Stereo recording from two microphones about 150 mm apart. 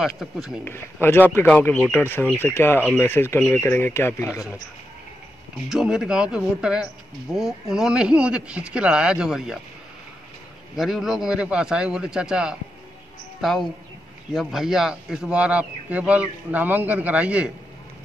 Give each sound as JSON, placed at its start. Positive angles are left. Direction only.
{"t": 0.0, "sound": "speech", "side_deg": 0}
{"t": 1.0, "sound": "speech", "side_deg": 15}
{"t": 5.7, "sound": "speech", "side_deg": -5}
{"t": 10.8, "sound": "a man's voice", "side_deg": 0}